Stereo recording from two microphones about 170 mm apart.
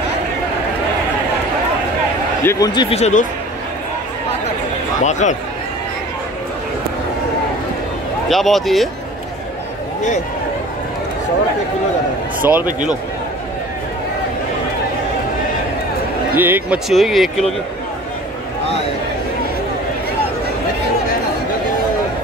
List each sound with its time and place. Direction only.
2.4 s speech: 25° left (ahead or behind)
2.9 s speech: 40° left (ahead or behind)
5.2 s a man's voice: 45° left (ahead or behind)
8.3 s speech: centre (ahead or behind)
12.4 s speech: 10° right (ahead or behind)
16.3 s speech: 10° right (ahead or behind)